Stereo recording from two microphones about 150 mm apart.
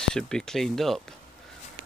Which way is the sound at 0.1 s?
5° left (ahead or behind).